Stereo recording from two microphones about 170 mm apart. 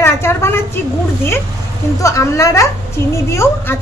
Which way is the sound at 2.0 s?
20° left (ahead or behind).